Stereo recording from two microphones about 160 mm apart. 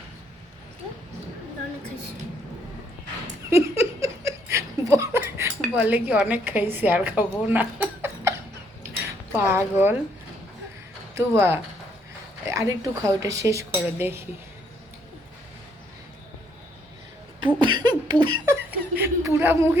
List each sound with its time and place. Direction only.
3.5 s laughter: 15° right (ahead or behind)
9.3 s speech: 15° right (ahead or behind)
11.2 s a woman's voice: 15° right (ahead or behind)
17.4 s beatboxing: 30° right (ahead or behind)
18.9 s a sound: 15° right (ahead or behind)